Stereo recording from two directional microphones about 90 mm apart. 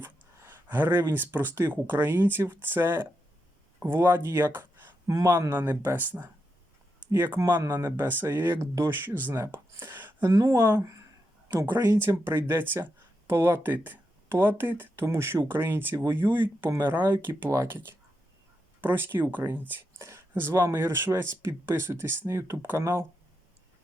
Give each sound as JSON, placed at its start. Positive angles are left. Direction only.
{"t": 0.0, "sound": "speech", "side_deg": -25}
{"t": 5.0, "sound": "speech", "side_deg": -35}
{"t": 5.5, "sound": "speech", "side_deg": -25}
{"t": 10.3, "sound": "speech", "side_deg": -35}
{"t": 11.9, "sound": "speech", "side_deg": -25}
{"t": 20.0, "sound": "speech", "side_deg": -30}